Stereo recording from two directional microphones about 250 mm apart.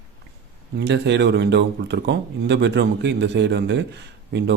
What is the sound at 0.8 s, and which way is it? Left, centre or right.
Speech, right.